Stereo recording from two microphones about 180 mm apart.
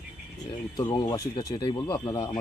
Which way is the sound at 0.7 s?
20° left (ahead or behind).